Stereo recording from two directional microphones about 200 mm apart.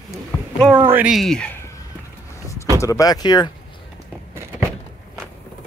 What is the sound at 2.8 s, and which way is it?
Speech, 15° left (ahead or behind).